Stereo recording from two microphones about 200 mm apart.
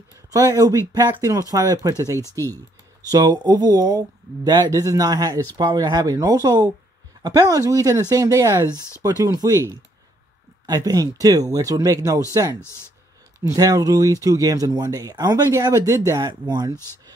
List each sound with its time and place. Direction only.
0.3 s speech: 15° right (ahead or behind)
2.4 s a sound: 10° left (ahead or behind)
3.1 s speech: 20° right (ahead or behind)
13.4 s speech: 15° right (ahead or behind)
16.7 s speech: 10° left (ahead or behind)